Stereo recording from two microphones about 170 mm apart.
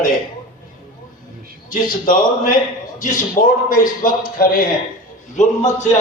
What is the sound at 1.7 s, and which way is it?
Speech, 55° left (ahead or behind).